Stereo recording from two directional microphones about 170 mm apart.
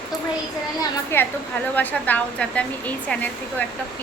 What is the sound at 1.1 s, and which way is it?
Speech, 15° left (ahead or behind).